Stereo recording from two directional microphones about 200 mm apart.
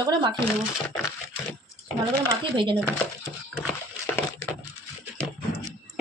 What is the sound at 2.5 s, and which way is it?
Speech, 25° right (ahead or behind).